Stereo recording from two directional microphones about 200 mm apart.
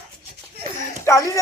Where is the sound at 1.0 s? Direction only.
15° left (ahead or behind).